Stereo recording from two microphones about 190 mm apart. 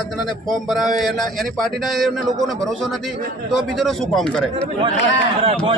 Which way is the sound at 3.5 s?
Centre (ahead or behind).